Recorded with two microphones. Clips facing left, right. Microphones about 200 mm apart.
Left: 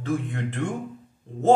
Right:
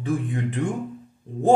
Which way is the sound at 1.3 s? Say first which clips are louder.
Right 4 dB; 15° right (ahead or behind).